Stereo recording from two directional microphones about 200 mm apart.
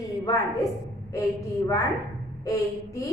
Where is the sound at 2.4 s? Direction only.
15° left (ahead or behind).